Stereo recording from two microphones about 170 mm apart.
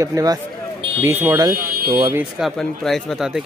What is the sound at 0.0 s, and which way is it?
Speech, 20° right (ahead or behind).